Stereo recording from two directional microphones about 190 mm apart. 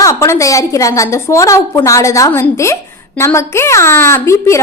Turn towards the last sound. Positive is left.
turn(degrees=15)  # may be behind; listen again after turning